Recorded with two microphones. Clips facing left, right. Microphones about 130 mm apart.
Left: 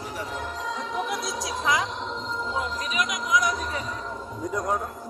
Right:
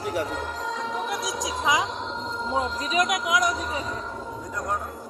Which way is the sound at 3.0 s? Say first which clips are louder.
Left 1 dB; 60° right (ahead or behind).